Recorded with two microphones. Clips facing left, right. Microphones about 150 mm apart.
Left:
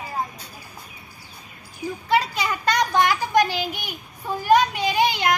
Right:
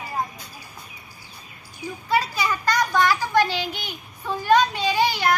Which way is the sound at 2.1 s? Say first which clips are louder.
Left 1 dB; 25° left (ahead or behind).